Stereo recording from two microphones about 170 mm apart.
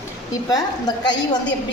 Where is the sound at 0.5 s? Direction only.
25° left (ahead or behind).